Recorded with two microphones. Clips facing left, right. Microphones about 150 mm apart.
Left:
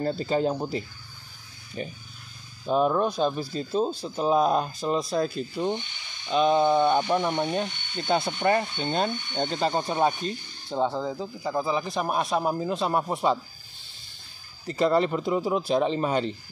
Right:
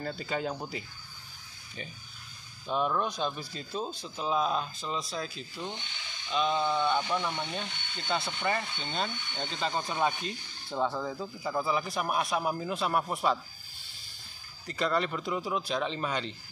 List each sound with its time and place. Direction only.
0.0 s speech: 35° left (ahead or behind)
1.8 s speech: 45° left (ahead or behind); by 13.4 s 25° left (ahead or behind)
14.7 s speech: 30° left (ahead or behind)